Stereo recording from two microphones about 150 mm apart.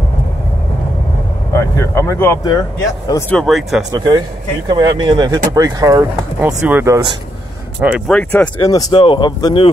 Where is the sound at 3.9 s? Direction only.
30° right (ahead or behind); by 8.0 s 10° right (ahead or behind).